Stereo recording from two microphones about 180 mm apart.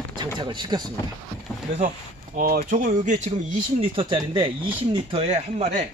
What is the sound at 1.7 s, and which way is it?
Speech, 45° right (ahead or behind).